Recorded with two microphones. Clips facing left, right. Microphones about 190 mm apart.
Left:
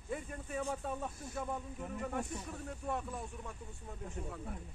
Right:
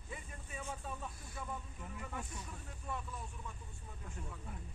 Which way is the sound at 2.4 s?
65° left (ahead or behind).